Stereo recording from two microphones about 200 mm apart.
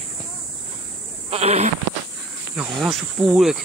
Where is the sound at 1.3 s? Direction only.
30° right (ahead or behind).